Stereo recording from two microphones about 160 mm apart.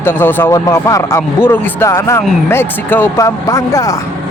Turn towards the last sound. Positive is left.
turn(degrees=20)  # may be behind; listen again after turning